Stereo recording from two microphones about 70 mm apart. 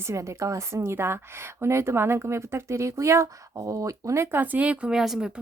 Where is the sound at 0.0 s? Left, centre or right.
Right.